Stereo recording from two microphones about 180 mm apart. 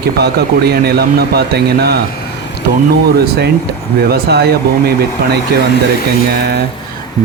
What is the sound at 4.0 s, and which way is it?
Speech, 60° right (ahead or behind).